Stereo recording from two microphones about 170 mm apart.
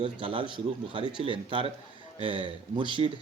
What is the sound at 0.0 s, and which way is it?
A man's voice, 30° right (ahead or behind).